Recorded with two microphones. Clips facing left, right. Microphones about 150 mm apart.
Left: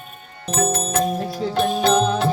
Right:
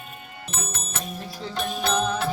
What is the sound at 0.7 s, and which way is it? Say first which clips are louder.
Music: left 14 dB; 35° left (ahead or behind).